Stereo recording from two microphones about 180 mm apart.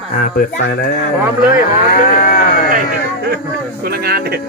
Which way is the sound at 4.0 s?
60° right (ahead or behind).